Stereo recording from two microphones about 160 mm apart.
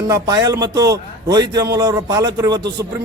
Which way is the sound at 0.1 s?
25° right (ahead or behind).